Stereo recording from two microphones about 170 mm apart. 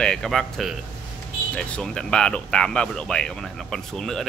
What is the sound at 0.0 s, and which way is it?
Speech, 5° left (ahead or behind).